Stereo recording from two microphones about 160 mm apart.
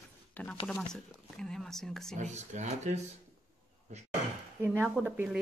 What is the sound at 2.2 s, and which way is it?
Speech, 45° right (ahead or behind).